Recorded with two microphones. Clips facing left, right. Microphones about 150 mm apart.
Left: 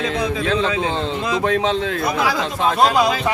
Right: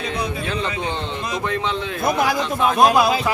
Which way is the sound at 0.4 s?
90° left.